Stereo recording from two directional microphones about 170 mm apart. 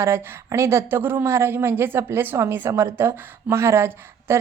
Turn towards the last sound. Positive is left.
turn(degrees=-15)  # may be behind; listen again after turning